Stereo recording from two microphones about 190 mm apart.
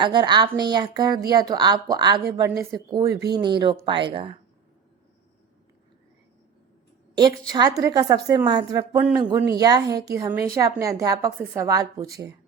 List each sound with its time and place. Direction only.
0.0 s speech: 25° right (ahead or behind)
3.1 s speech: 60° right (ahead or behind)
3.3 s speech: 25° right (ahead or behind)
7.2 s a woman's voice: 20° right (ahead or behind)